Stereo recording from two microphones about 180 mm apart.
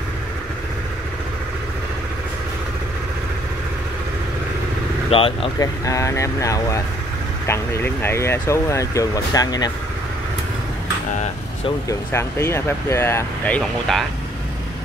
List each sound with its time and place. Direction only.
5.1 s speech: 30° left (ahead or behind)
5.9 s speech: 15° left (ahead or behind)
11.9 s speech: 15° left (ahead or behind)
13.6 s speech: centre (ahead or behind)